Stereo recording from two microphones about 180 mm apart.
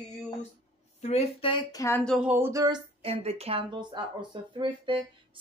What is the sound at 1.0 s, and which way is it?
Speech, 35° left (ahead or behind).